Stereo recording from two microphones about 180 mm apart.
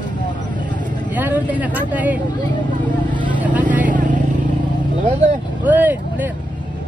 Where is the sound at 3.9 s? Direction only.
45° right (ahead or behind).